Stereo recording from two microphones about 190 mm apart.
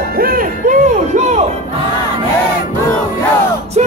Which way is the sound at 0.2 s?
50° right (ahead or behind).